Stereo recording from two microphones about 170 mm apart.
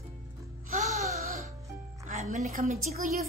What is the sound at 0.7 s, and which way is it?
Music, 45° right (ahead or behind).